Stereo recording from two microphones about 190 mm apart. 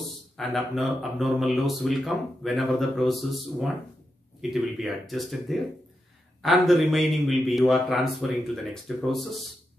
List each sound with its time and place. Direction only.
0.4 s speech: centre (ahead or behind)